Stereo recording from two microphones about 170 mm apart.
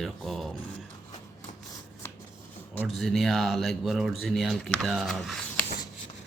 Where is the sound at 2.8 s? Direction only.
Centre (ahead or behind).